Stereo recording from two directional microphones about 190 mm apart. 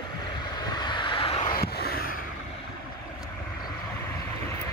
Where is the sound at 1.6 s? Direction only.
55° left (ahead or behind).